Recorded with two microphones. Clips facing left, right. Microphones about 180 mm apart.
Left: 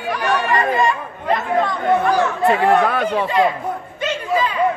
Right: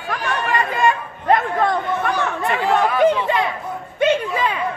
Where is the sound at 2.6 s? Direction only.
60° left (ahead or behind).